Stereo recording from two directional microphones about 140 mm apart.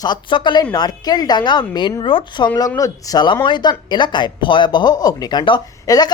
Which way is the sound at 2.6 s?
25° left (ahead or behind).